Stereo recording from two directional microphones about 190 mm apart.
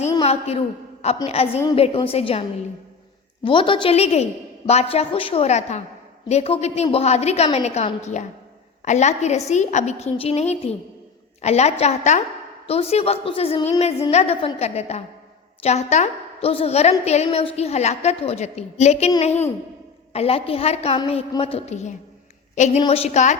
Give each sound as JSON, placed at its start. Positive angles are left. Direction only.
{"t": 0.2, "sound": "a woman's voice", "side_deg": 35}